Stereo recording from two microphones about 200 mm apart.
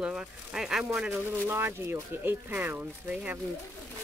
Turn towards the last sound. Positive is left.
turn(degrees=-10)  # may be behind; listen again after turning